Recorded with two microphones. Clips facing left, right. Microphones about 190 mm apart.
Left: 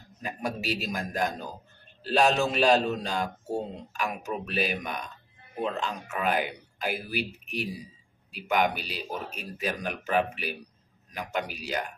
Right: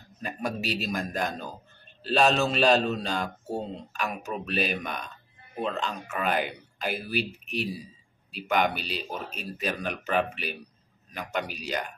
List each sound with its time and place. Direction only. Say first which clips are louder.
0.2 s speech: right 1 dB; 10° left (ahead or behind)
8.3 s speech: even; 10° left (ahead or behind)